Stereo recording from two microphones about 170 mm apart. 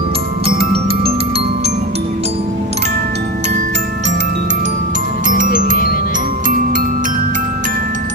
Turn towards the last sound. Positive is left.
turn(degrees=-50)  # may be behind; listen again after turning